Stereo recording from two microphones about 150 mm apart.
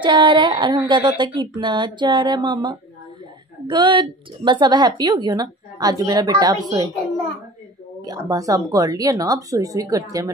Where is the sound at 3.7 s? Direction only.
30° right (ahead or behind).